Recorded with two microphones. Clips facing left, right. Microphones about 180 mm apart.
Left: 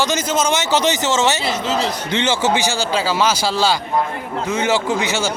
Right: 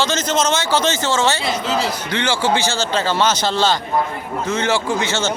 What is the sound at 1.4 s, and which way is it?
Speech, centre (ahead or behind).